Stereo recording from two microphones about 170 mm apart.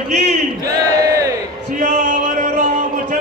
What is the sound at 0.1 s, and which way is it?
Battle cry, 45° right (ahead or behind).